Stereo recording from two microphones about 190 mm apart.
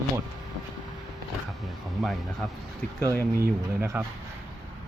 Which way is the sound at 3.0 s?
15° left (ahead or behind).